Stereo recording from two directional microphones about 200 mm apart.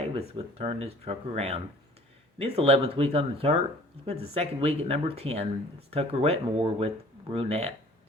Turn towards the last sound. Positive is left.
turn(degrees=-30)  # may be behind; listen again after turning